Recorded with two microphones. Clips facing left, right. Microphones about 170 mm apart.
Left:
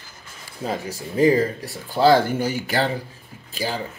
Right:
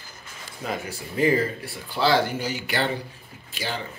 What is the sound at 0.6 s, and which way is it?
Speech, 30° left (ahead or behind).